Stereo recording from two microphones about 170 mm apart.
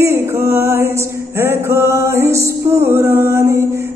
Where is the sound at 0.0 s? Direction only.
15° right (ahead or behind).